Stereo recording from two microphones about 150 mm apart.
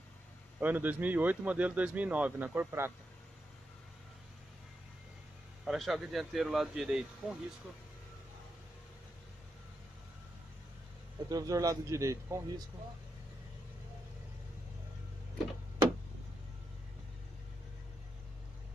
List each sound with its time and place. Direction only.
0.6 s speech: 10° right (ahead or behind)
5.7 s speech: centre (ahead or behind)
11.2 s speech: 25° right (ahead or behind)